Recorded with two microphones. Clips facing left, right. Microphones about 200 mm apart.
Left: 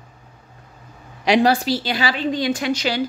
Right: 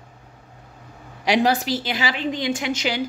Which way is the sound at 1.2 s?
15° right (ahead or behind).